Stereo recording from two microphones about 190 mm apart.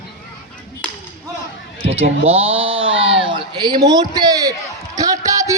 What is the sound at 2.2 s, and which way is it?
Speech, 30° right (ahead or behind).